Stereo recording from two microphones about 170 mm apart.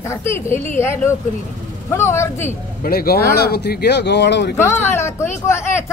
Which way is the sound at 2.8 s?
65° left (ahead or behind).